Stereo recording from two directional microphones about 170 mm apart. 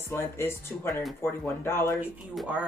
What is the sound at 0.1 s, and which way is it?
Speech, 15° left (ahead or behind).